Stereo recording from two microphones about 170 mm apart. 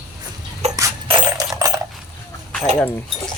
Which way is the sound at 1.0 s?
25° right (ahead or behind).